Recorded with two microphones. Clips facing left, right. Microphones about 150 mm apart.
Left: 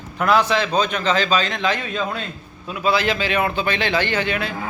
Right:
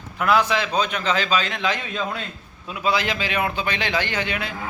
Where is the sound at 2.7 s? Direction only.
15° right (ahead or behind).